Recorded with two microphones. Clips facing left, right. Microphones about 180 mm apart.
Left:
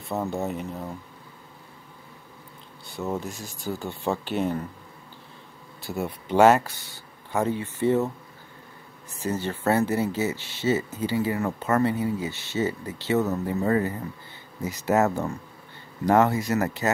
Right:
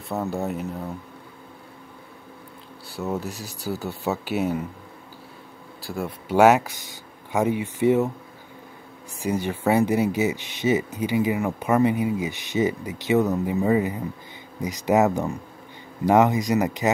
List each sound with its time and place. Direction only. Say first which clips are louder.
0.1 s speech: right 1 dB; centre (ahead or behind)
3.0 s speech: right 1 dB; centre (ahead or behind)
3.3 s speech: right 2 dB; 70° right (ahead or behind)
3.5 s speech: right 2 dB; 35° right (ahead or behind)
3.8 s speech: left 1 dB; 5° right (ahead or behind)
6.2 s speech: right 1 dB; 10° right (ahead or behind)
9.1 s speech: right 3 dB; 10° right (ahead or behind)